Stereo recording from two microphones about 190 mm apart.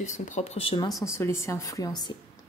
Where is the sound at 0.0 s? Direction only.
40° left (ahead or behind).